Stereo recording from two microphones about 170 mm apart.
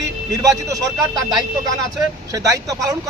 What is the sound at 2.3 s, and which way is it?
Speech, 20° right (ahead or behind).